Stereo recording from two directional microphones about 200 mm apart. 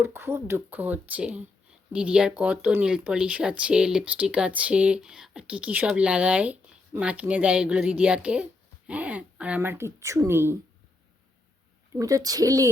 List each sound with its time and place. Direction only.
0.0 s speech: 10° right (ahead or behind)
11.9 s speech: 15° right (ahead or behind)